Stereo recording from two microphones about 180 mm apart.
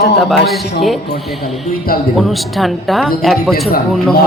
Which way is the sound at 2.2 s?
Centre (ahead or behind).